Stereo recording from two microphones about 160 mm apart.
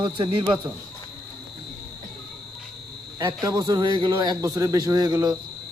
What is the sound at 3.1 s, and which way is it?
A man's voice, 25° right (ahead or behind).